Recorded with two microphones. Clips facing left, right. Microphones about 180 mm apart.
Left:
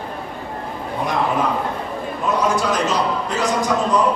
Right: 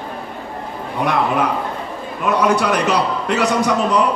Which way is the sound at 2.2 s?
65° right (ahead or behind).